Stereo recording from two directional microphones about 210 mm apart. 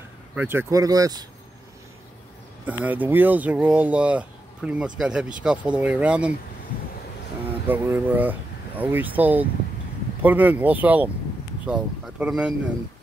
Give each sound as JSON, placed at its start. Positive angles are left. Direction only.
{"t": 0.3, "sound": "speech", "side_deg": -10}
{"t": 2.6, "sound": "speech", "side_deg": -5}
{"t": 7.6, "sound": "speech", "side_deg": -10}